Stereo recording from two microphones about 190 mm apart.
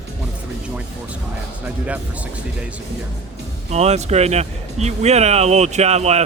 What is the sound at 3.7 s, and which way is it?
Speech, 35° right (ahead or behind).